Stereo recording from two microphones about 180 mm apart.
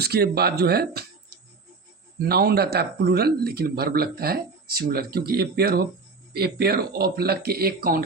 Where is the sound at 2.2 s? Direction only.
60° right (ahead or behind).